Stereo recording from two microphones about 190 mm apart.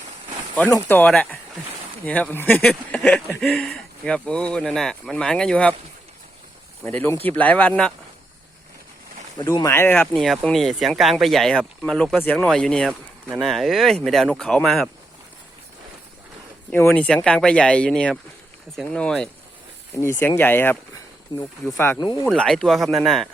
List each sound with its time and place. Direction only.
0.5 s speech: 10° left (ahead or behind)
6.8 s speech: 10° left (ahead or behind)
9.4 s speech: 20° left (ahead or behind); by 14.8 s centre (ahead or behind)
16.7 s speech: 10° left (ahead or behind)
21.3 s speech: 20° left (ahead or behind)
22.3 s speech: centre (ahead or behind)